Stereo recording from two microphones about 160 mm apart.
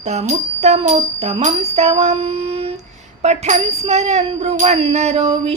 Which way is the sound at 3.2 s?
45° right (ahead or behind).